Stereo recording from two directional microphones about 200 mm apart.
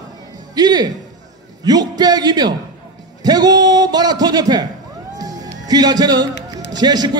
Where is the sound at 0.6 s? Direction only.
20° right (ahead or behind).